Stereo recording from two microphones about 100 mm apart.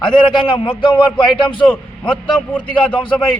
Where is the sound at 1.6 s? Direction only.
10° left (ahead or behind).